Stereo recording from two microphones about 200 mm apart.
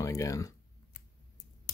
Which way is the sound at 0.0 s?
15° left (ahead or behind).